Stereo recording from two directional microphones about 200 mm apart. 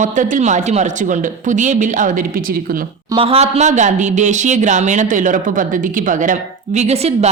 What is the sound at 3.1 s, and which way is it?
Speech, 30° right (ahead or behind).